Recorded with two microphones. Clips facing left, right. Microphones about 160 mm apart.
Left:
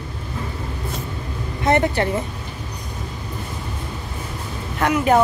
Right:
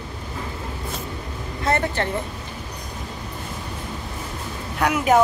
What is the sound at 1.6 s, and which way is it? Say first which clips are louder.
Speech: left 4 dB; 20° left (ahead or behind).